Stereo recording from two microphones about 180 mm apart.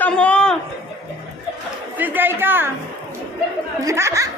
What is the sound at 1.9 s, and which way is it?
Speech, 10° right (ahead or behind).